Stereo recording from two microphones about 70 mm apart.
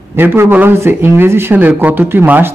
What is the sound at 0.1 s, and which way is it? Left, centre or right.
A man's voice, right.